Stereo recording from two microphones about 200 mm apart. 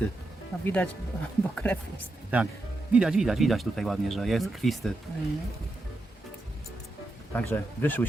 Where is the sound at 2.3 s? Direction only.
10° right (ahead or behind).